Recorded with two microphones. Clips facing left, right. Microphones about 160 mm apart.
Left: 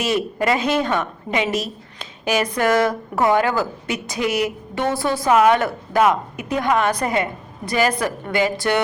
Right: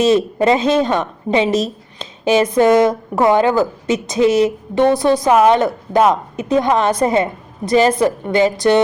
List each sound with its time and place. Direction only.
0.0 s a woman's voice: 25° right (ahead or behind)